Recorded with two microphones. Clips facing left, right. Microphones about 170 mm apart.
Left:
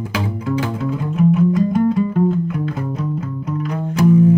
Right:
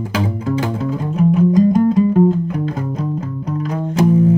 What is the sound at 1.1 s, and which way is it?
Music, 40° right (ahead or behind).